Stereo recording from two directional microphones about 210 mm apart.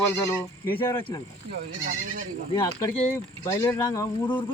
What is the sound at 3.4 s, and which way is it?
Speech, 10° left (ahead or behind).